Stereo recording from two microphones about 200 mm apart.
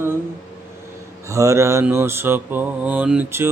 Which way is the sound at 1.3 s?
15° right (ahead or behind).